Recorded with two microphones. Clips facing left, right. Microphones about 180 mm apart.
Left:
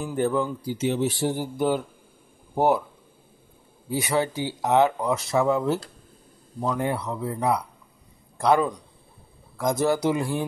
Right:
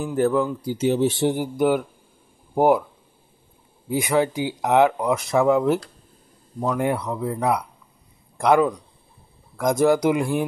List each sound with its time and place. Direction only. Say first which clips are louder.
0.0 s speech: right 4 dB; centre (ahead or behind)
0.7 s speech: right 4 dB; 35° right (ahead or behind)
1.1 s speech: right 4 dB; 20° right (ahead or behind)
3.9 s speech: right 4 dB; 15° right (ahead or behind)